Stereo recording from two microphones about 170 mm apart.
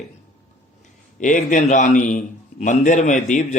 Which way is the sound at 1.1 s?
50° left (ahead or behind).